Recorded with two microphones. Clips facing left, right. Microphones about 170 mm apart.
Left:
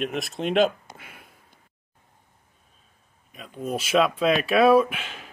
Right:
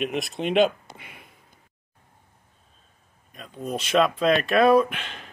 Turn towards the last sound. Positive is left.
turn(degrees=5)  # may be behind; listen again after turning